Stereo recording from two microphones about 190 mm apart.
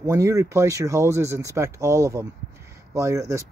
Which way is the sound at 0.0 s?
15° right (ahead or behind).